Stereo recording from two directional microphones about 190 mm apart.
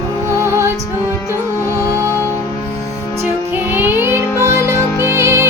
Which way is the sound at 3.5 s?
10° right (ahead or behind).